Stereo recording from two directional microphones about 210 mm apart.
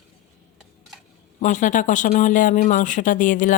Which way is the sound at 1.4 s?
35° left (ahead or behind).